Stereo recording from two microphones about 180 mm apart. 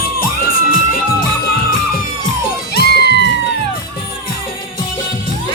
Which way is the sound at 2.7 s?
65° left (ahead or behind).